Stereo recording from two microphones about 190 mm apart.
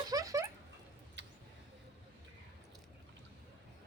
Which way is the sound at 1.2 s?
70° right (ahead or behind).